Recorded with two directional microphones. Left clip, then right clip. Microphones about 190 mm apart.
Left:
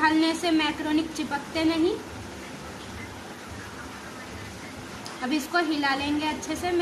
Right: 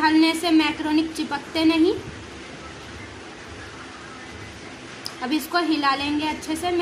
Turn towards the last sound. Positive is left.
turn(degrees=-20)  # may be behind; listen again after turning